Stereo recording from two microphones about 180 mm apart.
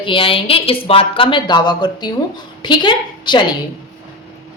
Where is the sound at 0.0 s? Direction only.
30° left (ahead or behind).